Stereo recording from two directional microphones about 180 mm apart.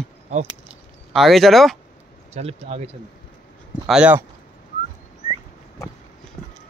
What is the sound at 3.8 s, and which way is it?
Speech, 5° right (ahead or behind).